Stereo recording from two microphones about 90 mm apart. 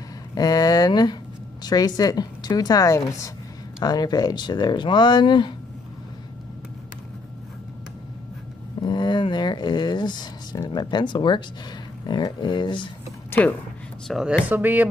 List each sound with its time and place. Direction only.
0.3 s a woman's voice: 45° left (ahead or behind)
3.8 s speech: 50° left (ahead or behind)
8.8 s a sound: 60° left (ahead or behind)
10.7 s speech: 55° left (ahead or behind)
13.3 s speech: 20° left (ahead or behind)
14.1 s speech: 5° left (ahead or behind)
14.4 s speech: 20° right (ahead or behind)